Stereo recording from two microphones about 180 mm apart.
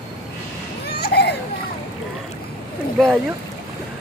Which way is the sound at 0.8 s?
65° left (ahead or behind).